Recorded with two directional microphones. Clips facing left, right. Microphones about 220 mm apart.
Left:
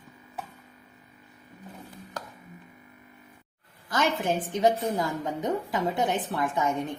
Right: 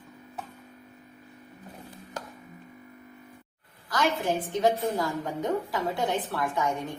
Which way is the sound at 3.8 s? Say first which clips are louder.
Even; 25° left (ahead or behind).